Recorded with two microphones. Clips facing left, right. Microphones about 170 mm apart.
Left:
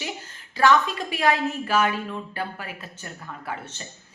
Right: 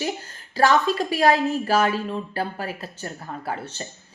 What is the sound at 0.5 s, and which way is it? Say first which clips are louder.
A woman's voice: right 1 dB; 35° right (ahead or behind).